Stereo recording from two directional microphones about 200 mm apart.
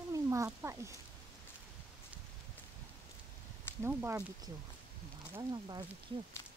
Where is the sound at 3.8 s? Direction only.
10° right (ahead or behind).